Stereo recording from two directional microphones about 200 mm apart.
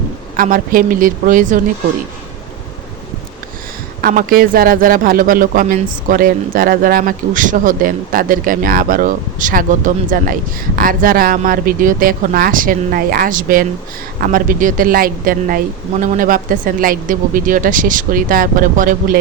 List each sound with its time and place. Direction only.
0.3 s a woman's voice: 45° right (ahead or behind)
4.0 s a man's voice: 45° right (ahead or behind)